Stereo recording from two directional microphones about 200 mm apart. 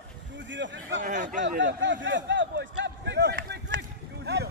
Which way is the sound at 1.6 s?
65° right (ahead or behind).